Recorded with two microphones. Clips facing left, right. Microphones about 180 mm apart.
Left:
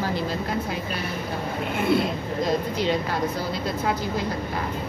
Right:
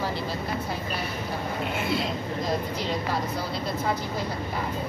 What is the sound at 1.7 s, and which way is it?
Speech, 55° left (ahead or behind).